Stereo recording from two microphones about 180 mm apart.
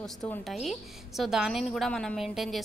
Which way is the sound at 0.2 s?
Centre (ahead or behind).